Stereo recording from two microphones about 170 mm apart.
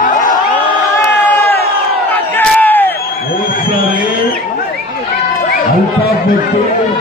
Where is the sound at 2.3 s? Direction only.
10° left (ahead or behind).